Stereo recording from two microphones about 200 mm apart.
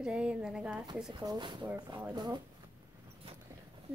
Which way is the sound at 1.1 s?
20° right (ahead or behind).